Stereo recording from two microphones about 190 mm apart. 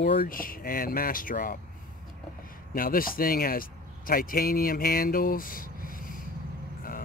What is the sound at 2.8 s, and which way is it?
Speech, 50° left (ahead or behind).